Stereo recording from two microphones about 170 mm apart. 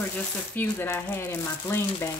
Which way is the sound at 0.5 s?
15° left (ahead or behind).